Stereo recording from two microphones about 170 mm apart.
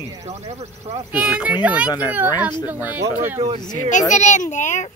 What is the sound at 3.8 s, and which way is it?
A child's voice, 45° left (ahead or behind).